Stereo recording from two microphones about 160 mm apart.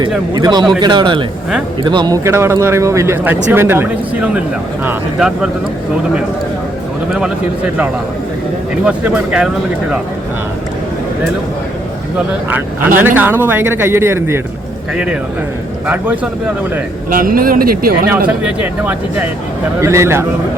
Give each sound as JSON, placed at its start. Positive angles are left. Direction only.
{"t": 0.3, "sound": "a man's voice", "side_deg": -25}
{"t": 8.8, "sound": "speech", "side_deg": -10}
{"t": 12.3, "sound": "speech", "side_deg": -10}
{"t": 17.1, "sound": "speech", "side_deg": -60}
{"t": 18.4, "sound": "speech", "side_deg": -10}